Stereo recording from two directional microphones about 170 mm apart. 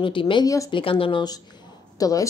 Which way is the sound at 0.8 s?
30° left (ahead or behind).